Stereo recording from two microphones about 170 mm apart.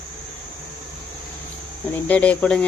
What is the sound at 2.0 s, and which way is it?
Speech, 10° left (ahead or behind).